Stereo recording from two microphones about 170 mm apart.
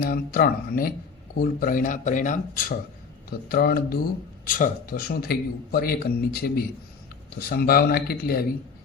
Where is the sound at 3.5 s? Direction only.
60° left (ahead or behind).